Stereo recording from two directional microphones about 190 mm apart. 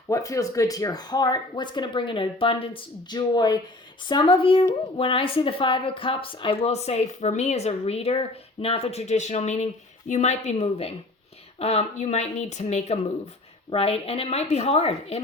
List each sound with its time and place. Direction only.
0.1 s a woman's voice: 15° left (ahead or behind); by 15.2 s 30° left (ahead or behind)